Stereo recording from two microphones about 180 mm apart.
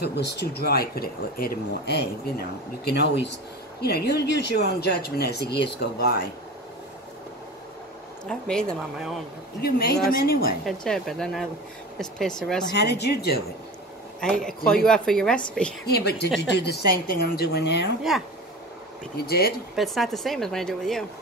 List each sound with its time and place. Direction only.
0.0 s speech: 70° left (ahead or behind)
8.3 s speech: 5° left (ahead or behind)
9.6 s speech: 60° left (ahead or behind)
10.6 s speech: centre (ahead or behind)
12.7 s speech: 65° left (ahead or behind)
14.2 s speech: 5° left (ahead or behind)
15.9 s speech: 60° left (ahead or behind)
18.1 s speech: centre (ahead or behind)
19.2 s speech: 60° left (ahead or behind)
19.7 s speech: centre (ahead or behind)